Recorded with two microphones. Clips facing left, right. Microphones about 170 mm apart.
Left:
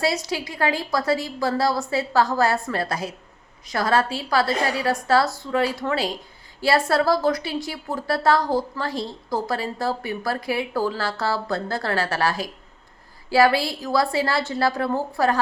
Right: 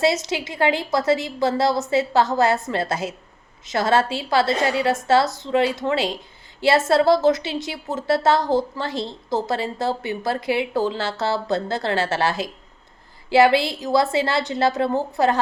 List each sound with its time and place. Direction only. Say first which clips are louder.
0.0 s speech: right 3 dB; 20° right (ahead or behind)